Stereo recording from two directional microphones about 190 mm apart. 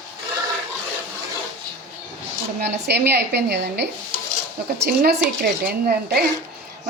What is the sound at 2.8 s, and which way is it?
Speech, 60° right (ahead or behind).